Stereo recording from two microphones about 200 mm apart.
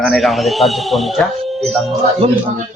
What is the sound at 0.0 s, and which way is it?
Speech, centre (ahead or behind).